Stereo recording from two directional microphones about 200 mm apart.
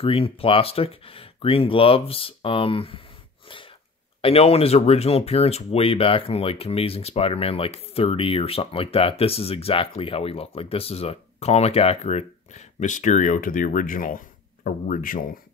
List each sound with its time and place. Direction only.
0.0 s speech: 30° left (ahead or behind)
4.2 s speech: 30° left (ahead or behind)